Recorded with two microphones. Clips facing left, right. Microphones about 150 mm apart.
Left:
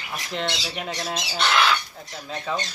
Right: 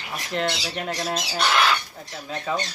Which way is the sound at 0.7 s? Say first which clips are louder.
Right 2 dB; 5° right (ahead or behind).